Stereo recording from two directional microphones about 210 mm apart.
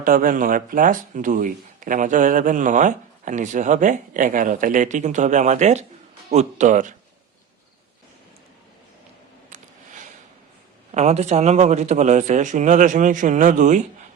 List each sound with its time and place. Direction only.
0.0 s speech: 40° right (ahead or behind)
9.5 s a sound: 35° right (ahead or behind)
10.9 s speech: 30° right (ahead or behind)